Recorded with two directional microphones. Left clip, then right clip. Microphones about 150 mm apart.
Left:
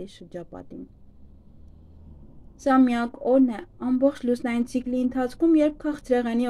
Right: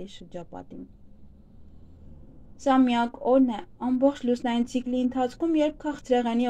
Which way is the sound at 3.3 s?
30° left (ahead or behind).